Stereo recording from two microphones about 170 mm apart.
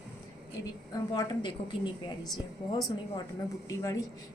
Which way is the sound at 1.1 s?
25° left (ahead or behind).